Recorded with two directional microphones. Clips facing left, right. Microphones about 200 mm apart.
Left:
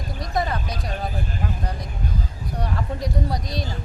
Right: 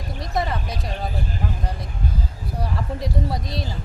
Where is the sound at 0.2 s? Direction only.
Centre (ahead or behind).